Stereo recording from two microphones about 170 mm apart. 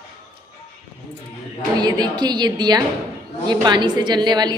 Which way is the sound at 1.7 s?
25° right (ahead or behind).